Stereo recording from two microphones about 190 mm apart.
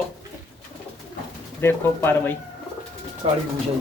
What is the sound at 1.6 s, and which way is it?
Speech, 10° left (ahead or behind).